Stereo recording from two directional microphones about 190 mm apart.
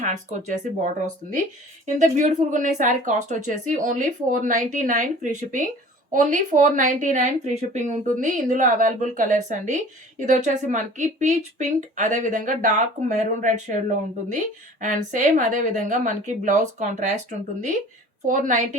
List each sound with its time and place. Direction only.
0.0 s speech: 40° right (ahead or behind)
2.0 s speech: 40° right (ahead or behind)
18.3 s speech: 40° right (ahead or behind)